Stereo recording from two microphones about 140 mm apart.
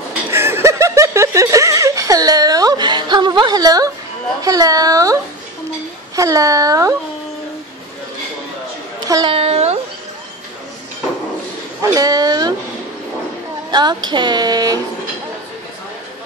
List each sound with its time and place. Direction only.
0.3 s snicker: 20° right (ahead or behind)
4.4 s speech: 25° right (ahead or behind)
9.0 s a child's voice: 25° right (ahead or behind)
9.3 s speech: 45° right (ahead or behind)
11.8 s speech: 25° right (ahead or behind)
13.7 s speech: 30° right (ahead or behind)